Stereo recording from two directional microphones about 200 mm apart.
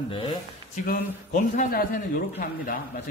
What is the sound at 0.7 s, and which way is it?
A man's voice, 40° left (ahead or behind).